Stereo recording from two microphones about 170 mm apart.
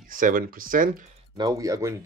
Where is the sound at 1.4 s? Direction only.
20° right (ahead or behind).